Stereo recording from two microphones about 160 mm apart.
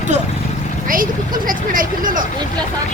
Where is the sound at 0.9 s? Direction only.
60° right (ahead or behind).